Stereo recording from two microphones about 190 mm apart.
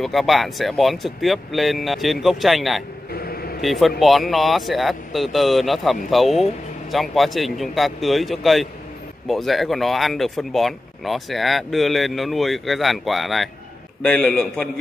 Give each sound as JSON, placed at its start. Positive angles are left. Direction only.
{"t": 0.0, "sound": "speech", "side_deg": 0}
{"t": 3.1, "sound": "a sound", "side_deg": 55}
{"t": 3.6, "sound": "speech", "side_deg": 0}